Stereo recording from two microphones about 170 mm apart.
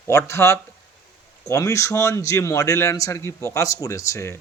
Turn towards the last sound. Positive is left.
turn(degrees=15)  # may be behind; listen again after turning